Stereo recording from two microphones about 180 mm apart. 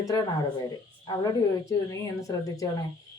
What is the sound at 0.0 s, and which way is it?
Speech, 20° left (ahead or behind).